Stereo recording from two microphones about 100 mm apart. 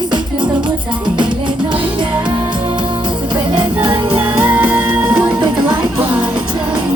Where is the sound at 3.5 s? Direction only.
55° right (ahead or behind).